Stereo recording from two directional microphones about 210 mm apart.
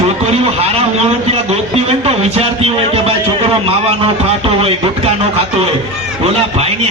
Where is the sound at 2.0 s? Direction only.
30° right (ahead or behind).